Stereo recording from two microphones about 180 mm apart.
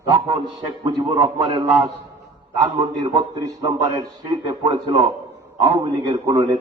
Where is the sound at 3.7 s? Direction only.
25° right (ahead or behind).